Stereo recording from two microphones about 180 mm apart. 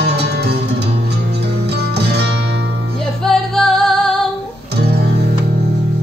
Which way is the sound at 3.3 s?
Centre (ahead or behind).